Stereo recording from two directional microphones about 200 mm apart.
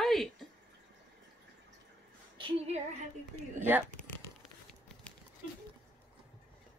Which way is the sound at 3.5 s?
10° right (ahead or behind).